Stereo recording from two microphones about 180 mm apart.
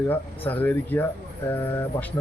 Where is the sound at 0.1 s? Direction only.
10° left (ahead or behind).